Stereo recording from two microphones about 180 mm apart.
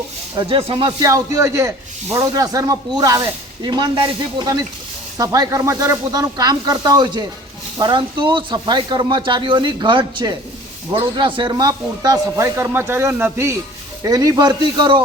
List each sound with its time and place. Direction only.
0.3 s a man's voice: 30° right (ahead or behind)